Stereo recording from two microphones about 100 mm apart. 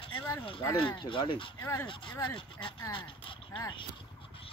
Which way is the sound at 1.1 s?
55° left (ahead or behind).